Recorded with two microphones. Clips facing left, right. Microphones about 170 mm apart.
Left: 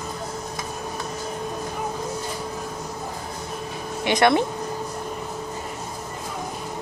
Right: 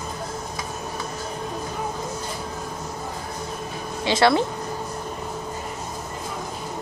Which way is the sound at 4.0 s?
20° left (ahead or behind).